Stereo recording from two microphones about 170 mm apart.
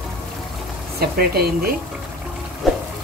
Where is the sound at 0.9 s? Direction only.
65° right (ahead or behind).